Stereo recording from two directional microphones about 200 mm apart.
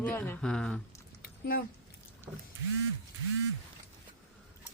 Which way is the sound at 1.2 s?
50° left (ahead or behind).